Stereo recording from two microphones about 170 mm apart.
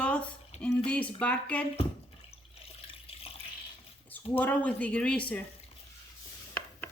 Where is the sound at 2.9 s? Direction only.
35° left (ahead or behind).